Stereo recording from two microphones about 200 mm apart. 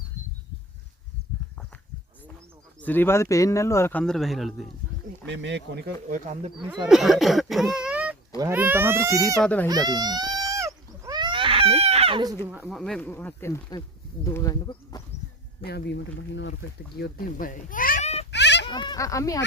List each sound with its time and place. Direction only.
2.8 s speech: 10° left (ahead or behind)
5.2 s speech: 60° right (ahead or behind); by 6.5 s 40° right (ahead or behind)
6.8 s speech: centre (ahead or behind)
9.4 s speech: 5° left (ahead or behind)
9.6 s a sound: 20° right (ahead or behind)
12.5 s speech: 5° right (ahead or behind); by 15.0 s 20° left (ahead or behind)
16.3 s speech: 65° left (ahead or behind)
17.0 s speech: 45° left (ahead or behind)
18.3 s dog: 60° left (ahead or behind)
18.7 s speech: 20° left (ahead or behind)